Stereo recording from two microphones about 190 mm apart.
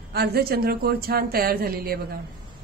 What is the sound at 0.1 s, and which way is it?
A woman's voice, 55° right (ahead or behind).